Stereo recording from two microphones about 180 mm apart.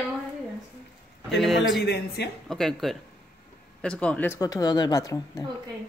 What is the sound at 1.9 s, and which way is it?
Speech, 65° left (ahead or behind).